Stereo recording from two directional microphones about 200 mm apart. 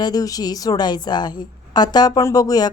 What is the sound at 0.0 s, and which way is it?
Speech, 20° left (ahead or behind).